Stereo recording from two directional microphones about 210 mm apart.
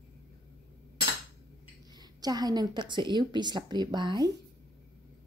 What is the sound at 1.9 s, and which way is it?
A woman's voice, 20° right (ahead or behind).